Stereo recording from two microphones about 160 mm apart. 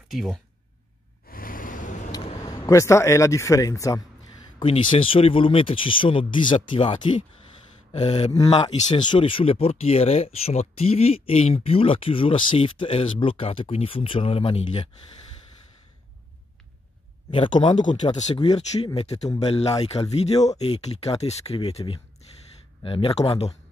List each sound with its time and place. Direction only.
0.1 s speech: centre (ahead or behind)
1.3 s gasp: 60° left (ahead or behind)
2.1 s speech: 25° left (ahead or behind)
4.6 s speech: 30° left (ahead or behind)
8.3 s speech: 25° left (ahead or behind)
17.3 s speech: 30° left (ahead or behind)